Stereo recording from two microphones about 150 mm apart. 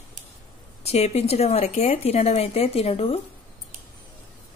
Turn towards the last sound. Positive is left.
turn(degrees=40)  # may be behind; listen again after turning